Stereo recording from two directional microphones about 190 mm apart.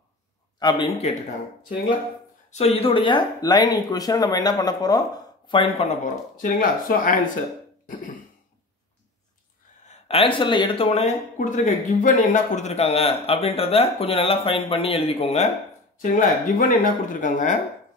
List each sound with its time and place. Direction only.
0.6 s speech: 25° left (ahead or behind)
2.5 s speech: 30° left (ahead or behind)
6.3 s speech: 45° left (ahead or behind)
7.8 s cough: 45° left (ahead or behind)
9.8 s speech: 30° left (ahead or behind)
16.0 s speech: 45° left (ahead or behind)